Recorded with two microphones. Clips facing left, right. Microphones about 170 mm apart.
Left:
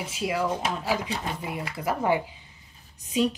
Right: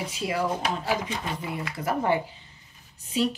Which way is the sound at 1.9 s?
15° left (ahead or behind).